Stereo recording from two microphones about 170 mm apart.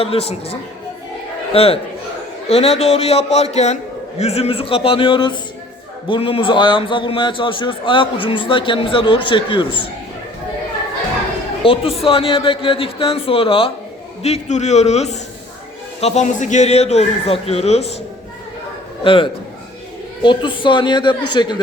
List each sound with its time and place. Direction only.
0.0 s a man's voice: 35° left (ahead or behind)
1.5 s a man's voice: 35° left (ahead or behind)
11.6 s a man's voice: 35° left (ahead or behind)
19.0 s a man's voice: 30° left (ahead or behind)